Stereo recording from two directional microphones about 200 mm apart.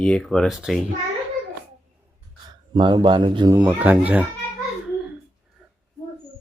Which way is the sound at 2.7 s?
25° right (ahead or behind).